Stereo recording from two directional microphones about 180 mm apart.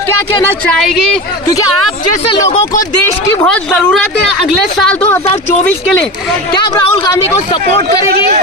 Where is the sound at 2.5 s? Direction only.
45° left (ahead or behind).